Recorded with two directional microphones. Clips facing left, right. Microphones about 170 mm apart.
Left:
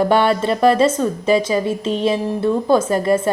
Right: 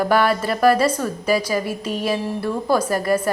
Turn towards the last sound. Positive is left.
turn(degrees=25)  # may be behind; listen again after turning